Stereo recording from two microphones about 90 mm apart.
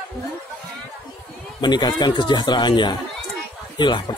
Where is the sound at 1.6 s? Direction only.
55° left (ahead or behind).